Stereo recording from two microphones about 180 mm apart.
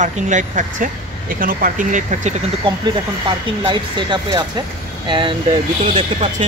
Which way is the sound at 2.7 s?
30° right (ahead or behind).